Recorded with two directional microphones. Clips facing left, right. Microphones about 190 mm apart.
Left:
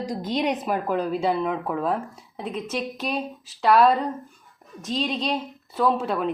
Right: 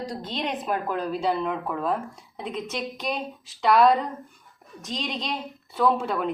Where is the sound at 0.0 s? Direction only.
10° left (ahead or behind).